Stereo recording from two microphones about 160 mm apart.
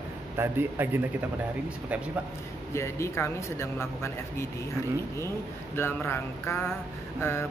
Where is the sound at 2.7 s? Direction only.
15° left (ahead or behind).